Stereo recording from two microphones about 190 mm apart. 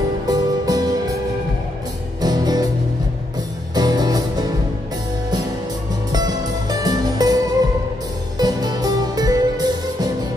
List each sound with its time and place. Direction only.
0.3 s music: 20° right (ahead or behind)
2.2 s music: 20° right (ahead or behind)
3.7 s music: 20° right (ahead or behind)
6.1 s music: 20° right (ahead or behind)